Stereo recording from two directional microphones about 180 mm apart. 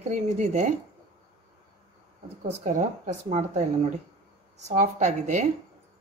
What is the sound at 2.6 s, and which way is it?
A woman's voice, 45° right (ahead or behind).